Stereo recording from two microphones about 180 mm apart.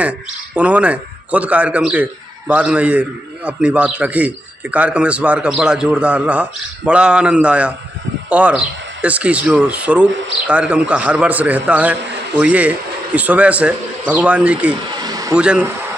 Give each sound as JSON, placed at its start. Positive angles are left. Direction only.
{"t": 0.6, "sound": "a man's voice", "side_deg": -5}
{"t": 14.9, "sound": "a sound", "side_deg": -20}
{"t": 15.3, "sound": "speech", "side_deg": -5}